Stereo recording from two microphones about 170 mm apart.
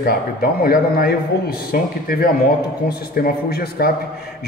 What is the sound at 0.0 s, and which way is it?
A man's voice, 60° left (ahead or behind).